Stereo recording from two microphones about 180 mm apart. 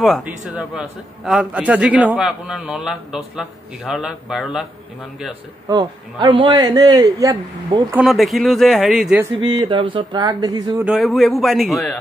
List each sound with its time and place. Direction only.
0.0 s a man's voice: centre (ahead or behind)
5.7 s a man's voice: 25° right (ahead or behind)
8.0 s a man's voice: centre (ahead or behind)
9.2 s a man's voice: 25° right (ahead or behind)
10.8 s a man's voice: centre (ahead or behind)